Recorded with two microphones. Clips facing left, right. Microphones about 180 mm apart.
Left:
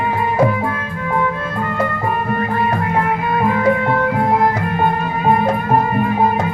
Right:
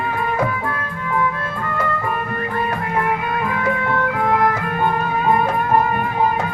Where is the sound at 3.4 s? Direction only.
35° left (ahead or behind).